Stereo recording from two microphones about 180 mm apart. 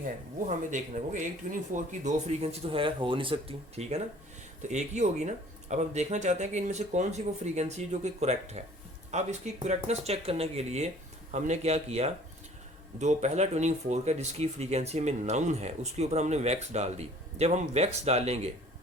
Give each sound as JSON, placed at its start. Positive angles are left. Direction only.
{"t": 0.7, "sound": "speech", "side_deg": -45}